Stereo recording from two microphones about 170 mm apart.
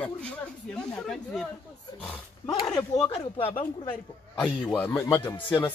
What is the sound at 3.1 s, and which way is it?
Speech, 35° left (ahead or behind).